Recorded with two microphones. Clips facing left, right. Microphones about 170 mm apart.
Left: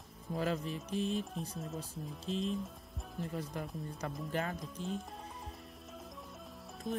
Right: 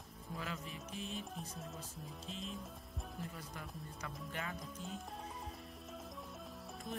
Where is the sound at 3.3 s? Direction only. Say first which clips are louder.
Left 9 dB; 35° left (ahead or behind).